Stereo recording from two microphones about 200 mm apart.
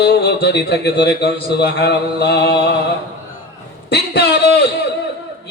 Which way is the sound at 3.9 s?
55° left (ahead or behind).